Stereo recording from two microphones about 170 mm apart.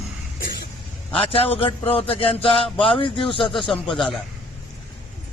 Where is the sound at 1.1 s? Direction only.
35° left (ahead or behind).